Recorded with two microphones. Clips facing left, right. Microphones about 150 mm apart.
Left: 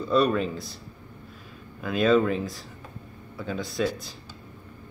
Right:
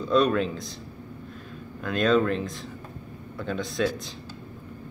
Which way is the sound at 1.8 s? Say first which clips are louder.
Left 1 dB; 5° left (ahead or behind).